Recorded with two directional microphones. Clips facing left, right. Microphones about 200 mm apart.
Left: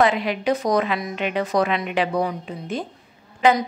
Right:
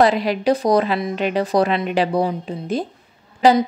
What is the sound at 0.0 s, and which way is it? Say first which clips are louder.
A woman's voice: right 3 dB; 35° right (ahead or behind).